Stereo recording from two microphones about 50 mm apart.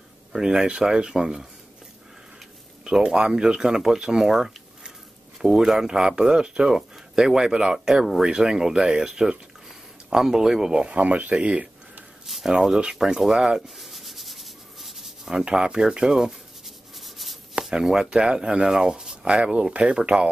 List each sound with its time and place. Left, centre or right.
0.3 s speech: centre
2.8 s speech: centre
12.3 s speech: centre
13.6 s rub: centre
15.2 s writing: centre
17.6 s speech: centre